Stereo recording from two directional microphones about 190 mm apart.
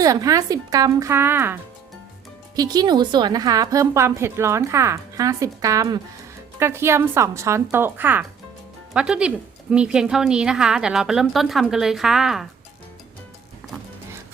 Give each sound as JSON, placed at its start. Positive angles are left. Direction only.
{"t": 0.0, "sound": "a woman's voice", "side_deg": -15}
{"t": 2.6, "sound": "a woman's voice", "side_deg": -20}